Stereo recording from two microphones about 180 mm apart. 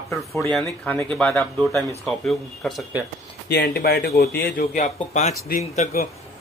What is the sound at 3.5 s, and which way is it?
Speech, 65° left (ahead or behind).